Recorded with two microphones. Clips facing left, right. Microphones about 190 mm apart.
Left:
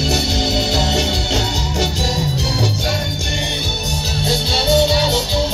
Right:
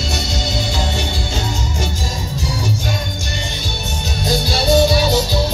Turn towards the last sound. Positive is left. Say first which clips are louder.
# right 1 dB
turn(degrees=25)  # may be behind; listen again after turning